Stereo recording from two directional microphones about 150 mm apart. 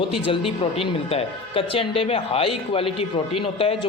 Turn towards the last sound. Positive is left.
turn(degrees=35)  # may be behind; listen again after turning